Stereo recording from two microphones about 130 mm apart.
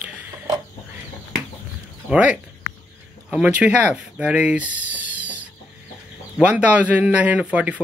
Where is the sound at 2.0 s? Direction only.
10° right (ahead or behind).